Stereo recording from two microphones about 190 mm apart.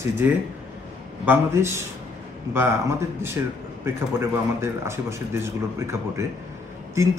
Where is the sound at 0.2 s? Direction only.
10° right (ahead or behind).